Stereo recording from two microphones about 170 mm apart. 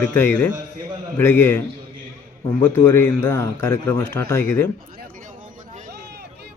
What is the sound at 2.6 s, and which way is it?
Speech, 15° left (ahead or behind).